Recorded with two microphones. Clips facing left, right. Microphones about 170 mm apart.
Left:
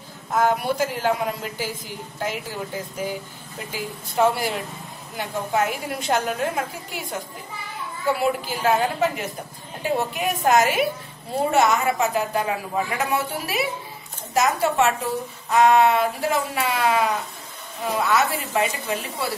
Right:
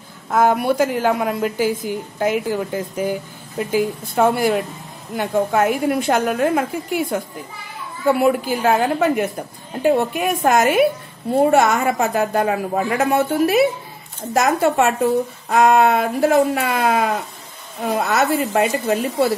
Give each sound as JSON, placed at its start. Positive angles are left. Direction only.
{"t": 0.3, "sound": "a woman's voice", "side_deg": -55}